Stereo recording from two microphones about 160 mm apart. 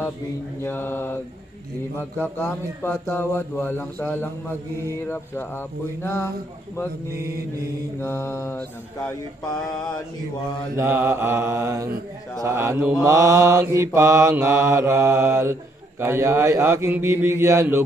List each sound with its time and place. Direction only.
0.6 s speech: 15° left (ahead or behind)
2.2 s speech: 10° left (ahead or behind)
8.0 s speech: 15° left (ahead or behind)
10.8 s mantra: 15° right (ahead or behind)
12.4 s speech: 20° right (ahead or behind)
13.0 s mantra: 20° right (ahead or behind)